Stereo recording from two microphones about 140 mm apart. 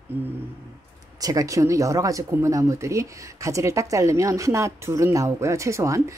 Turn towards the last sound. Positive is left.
turn(degrees=-20)  # may be behind; listen again after turning